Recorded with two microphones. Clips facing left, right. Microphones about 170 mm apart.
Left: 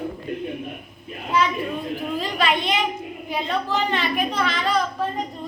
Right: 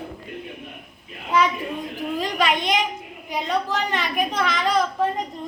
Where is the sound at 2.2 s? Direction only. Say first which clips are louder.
Right 1 dB; 15° right (ahead or behind).